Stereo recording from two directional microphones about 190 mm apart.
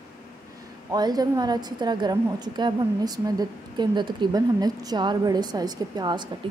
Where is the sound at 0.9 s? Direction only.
20° right (ahead or behind).